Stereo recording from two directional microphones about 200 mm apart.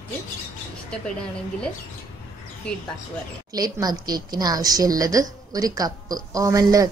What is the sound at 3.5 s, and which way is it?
A woman's voice, 20° right (ahead or behind).